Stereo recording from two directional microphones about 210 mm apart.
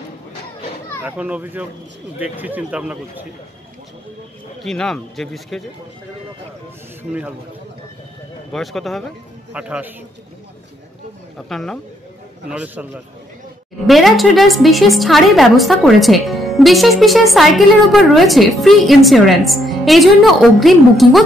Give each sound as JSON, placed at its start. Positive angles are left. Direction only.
{"t": 1.0, "sound": "speech", "side_deg": -5}
{"t": 4.6, "sound": "a woman's voice", "side_deg": 5}
{"t": 7.0, "sound": "speech", "side_deg": -10}
{"t": 8.5, "sound": "a woman's voice", "side_deg": 0}
{"t": 11.3, "sound": "a woman's voice", "side_deg": 0}
{"t": 13.8, "sound": "a woman's voice", "side_deg": 0}